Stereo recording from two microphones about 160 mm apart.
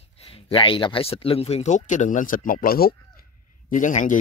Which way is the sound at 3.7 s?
55° left (ahead or behind).